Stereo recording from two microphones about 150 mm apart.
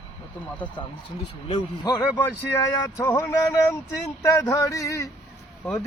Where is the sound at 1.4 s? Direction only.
30° left (ahead or behind).